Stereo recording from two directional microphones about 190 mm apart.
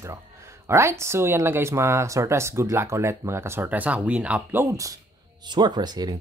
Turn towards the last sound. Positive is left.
turn(degrees=-20)  # may be behind; listen again after turning